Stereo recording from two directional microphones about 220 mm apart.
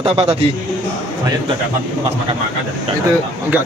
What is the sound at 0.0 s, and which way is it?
Speech, 25° right (ahead or behind).